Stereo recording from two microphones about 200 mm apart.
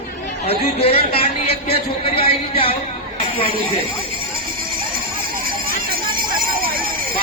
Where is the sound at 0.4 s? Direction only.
30° left (ahead or behind).